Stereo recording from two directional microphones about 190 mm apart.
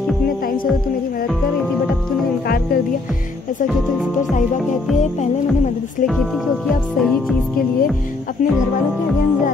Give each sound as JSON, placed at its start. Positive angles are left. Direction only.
{"t": 2.4, "sound": "music", "side_deg": 55}
{"t": 7.0, "sound": "music", "side_deg": 0}